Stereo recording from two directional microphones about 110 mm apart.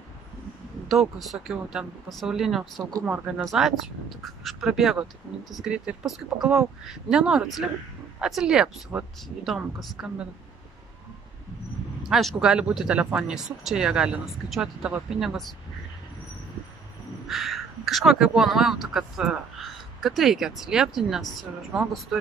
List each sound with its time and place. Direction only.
0.8 s speech: centre (ahead or behind)
12.0 s speech: centre (ahead or behind)
17.3 s speech: centre (ahead or behind)